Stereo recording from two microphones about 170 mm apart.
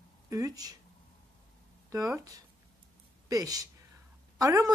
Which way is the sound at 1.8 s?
20° right (ahead or behind).